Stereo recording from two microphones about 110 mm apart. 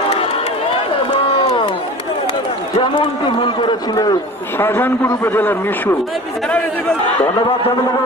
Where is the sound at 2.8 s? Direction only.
50° left (ahead or behind).